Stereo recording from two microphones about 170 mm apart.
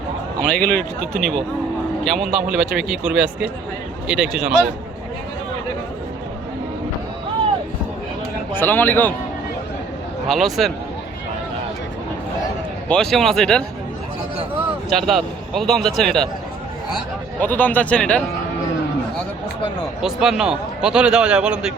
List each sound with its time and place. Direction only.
0.5 s a man's voice: 10° left (ahead or behind)
8.5 s speech: 10° left (ahead or behind)
10.2 s a man's voice: centre (ahead or behind)
12.9 s a man's voice: 5° left (ahead or behind)
14.8 s speech: centre (ahead or behind)
17.4 s speech: 10° left (ahead or behind)
20.0 s a man's voice: 5° right (ahead or behind)